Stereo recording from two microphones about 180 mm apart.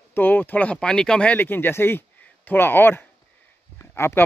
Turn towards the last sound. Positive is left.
turn(degrees=15)  # may be behind; listen again after turning